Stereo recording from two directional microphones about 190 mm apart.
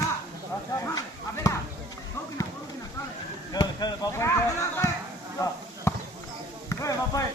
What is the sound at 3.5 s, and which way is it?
Chop, 20° left (ahead or behind).